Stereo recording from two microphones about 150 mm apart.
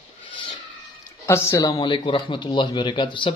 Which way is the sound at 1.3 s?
20° left (ahead or behind).